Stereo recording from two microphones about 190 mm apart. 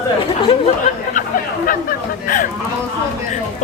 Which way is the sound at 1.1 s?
40° left (ahead or behind).